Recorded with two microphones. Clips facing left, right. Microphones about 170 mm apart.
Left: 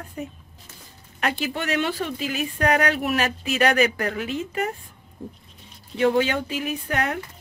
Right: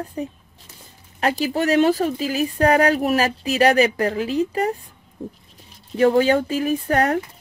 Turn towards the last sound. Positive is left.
turn(degrees=-40)  # may be behind; listen again after turning